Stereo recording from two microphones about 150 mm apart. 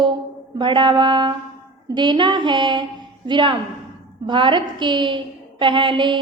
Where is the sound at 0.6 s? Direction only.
30° right (ahead or behind).